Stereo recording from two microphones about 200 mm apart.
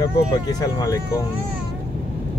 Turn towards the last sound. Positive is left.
turn(degrees=15)  # may be behind; listen again after turning